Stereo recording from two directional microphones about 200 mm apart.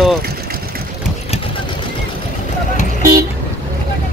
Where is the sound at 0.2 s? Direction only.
50° right (ahead or behind).